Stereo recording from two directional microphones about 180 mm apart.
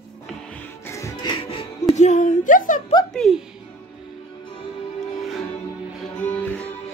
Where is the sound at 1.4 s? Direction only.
35° left (ahead or behind).